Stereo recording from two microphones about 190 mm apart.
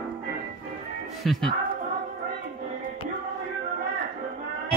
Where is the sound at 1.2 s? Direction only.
Centre (ahead or behind).